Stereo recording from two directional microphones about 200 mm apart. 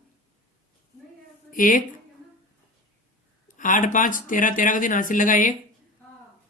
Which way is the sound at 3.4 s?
40° left (ahead or behind).